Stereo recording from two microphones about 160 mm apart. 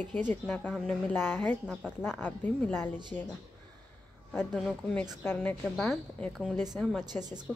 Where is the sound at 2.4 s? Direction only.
10° left (ahead or behind).